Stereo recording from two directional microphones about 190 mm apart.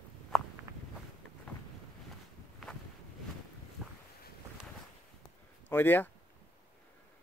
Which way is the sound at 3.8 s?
Centre (ahead or behind).